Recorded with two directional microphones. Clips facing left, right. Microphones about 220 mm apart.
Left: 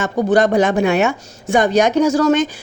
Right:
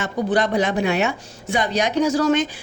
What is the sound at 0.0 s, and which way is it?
A woman's voice, 45° left (ahead or behind).